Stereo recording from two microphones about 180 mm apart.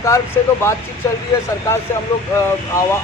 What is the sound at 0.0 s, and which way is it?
Speech, 15° left (ahead or behind).